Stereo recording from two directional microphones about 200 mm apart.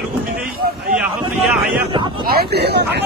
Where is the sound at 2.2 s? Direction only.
50° right (ahead or behind).